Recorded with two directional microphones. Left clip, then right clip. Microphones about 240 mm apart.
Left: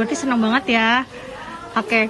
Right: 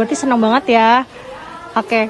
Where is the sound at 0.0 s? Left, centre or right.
Centre.